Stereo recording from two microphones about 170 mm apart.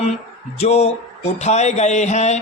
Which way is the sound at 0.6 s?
40° left (ahead or behind).